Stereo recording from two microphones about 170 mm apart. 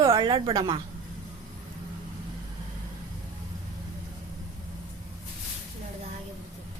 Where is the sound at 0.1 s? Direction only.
25° right (ahead or behind).